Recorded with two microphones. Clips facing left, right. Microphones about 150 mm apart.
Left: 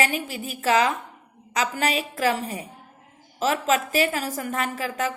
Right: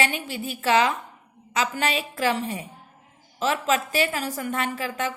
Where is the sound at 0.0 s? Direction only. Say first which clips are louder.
Left 1 dB; 35° left (ahead or behind).